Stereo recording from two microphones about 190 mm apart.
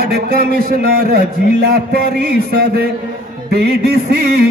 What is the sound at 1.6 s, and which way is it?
Music, 55° right (ahead or behind).